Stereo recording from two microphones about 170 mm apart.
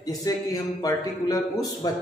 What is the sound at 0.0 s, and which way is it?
A man's voice, 20° left (ahead or behind).